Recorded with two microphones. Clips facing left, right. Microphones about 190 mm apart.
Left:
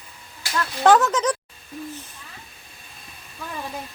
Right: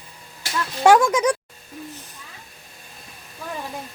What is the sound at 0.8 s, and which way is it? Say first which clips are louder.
Speech: right 2 dB; 10° right (ahead or behind).